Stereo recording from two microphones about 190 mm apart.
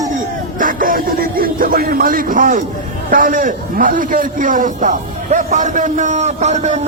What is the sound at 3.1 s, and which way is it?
A man's voice, 45° right (ahead or behind).